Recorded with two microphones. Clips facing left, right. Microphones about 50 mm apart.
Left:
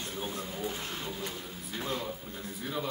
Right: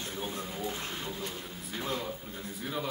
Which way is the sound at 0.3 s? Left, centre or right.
Centre.